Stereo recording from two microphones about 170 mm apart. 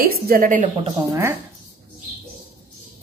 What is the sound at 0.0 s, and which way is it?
Speech, 60° right (ahead or behind).